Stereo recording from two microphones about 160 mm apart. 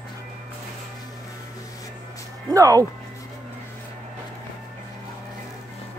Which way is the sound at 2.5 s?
20° right (ahead or behind).